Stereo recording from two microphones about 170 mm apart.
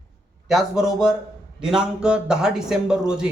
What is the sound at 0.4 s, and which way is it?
A man's voice, centre (ahead or behind).